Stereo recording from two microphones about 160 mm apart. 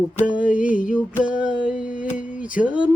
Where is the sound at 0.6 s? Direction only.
55° left (ahead or behind).